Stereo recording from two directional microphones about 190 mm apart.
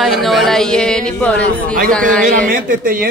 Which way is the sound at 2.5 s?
45° right (ahead or behind).